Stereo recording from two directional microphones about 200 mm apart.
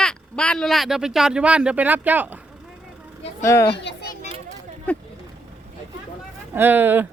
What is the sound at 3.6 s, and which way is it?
Children playing, 55° left (ahead or behind).